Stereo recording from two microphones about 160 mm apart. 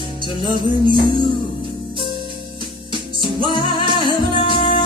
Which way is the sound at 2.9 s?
30° right (ahead or behind).